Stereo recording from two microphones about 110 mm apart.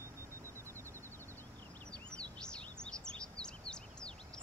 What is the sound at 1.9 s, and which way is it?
Bird vocalization, 5° left (ahead or behind).